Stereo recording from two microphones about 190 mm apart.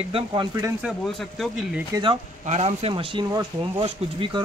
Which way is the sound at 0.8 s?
Centre (ahead or behind).